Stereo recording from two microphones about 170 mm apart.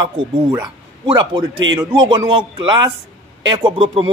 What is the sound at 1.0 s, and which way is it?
Speech, 30° right (ahead or behind).